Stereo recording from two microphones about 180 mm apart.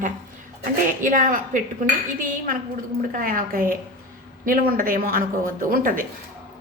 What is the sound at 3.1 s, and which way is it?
A woman's voice, 50° right (ahead or behind).